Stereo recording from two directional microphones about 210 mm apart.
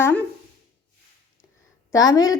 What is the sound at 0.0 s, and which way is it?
Speech, 5° left (ahead or behind).